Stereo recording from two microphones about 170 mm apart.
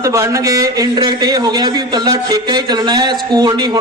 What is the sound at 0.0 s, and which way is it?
A man's voice, 20° right (ahead or behind).